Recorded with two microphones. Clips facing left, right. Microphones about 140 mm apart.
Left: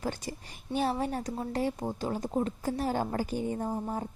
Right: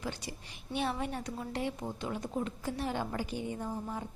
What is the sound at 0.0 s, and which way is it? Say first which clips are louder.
A woman's voice: left 5 dB; 45° left (ahead or behind).